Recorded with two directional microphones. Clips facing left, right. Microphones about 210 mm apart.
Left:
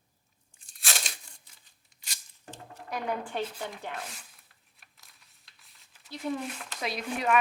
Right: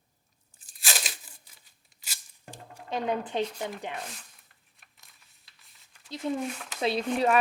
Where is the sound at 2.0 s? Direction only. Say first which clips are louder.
Right 1 dB; 10° right (ahead or behind).